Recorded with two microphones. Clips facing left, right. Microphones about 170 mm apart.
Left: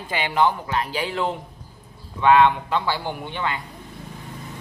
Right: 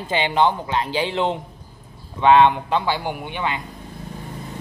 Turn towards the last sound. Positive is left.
turn(degrees=-15)  # may be behind; listen again after turning